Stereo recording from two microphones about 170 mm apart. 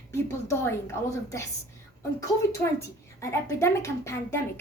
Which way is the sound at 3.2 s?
15° left (ahead or behind).